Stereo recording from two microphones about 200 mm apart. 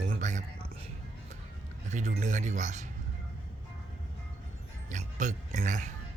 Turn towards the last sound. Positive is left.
turn(degrees=-40)  # may be behind; listen again after turning